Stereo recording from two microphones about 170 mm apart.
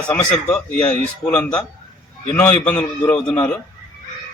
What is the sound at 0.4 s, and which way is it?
A man's voice, 10° left (ahead or behind).